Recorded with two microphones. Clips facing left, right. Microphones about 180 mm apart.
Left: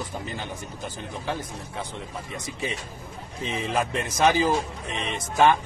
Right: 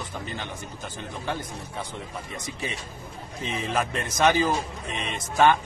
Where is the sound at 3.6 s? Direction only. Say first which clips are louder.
Left 1 dB; centre (ahead or behind).